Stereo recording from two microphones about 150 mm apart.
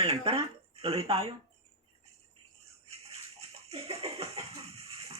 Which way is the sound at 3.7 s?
45° right (ahead or behind).